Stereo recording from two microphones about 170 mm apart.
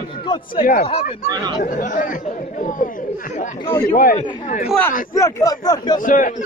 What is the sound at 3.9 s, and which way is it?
Speech, 50° left (ahead or behind).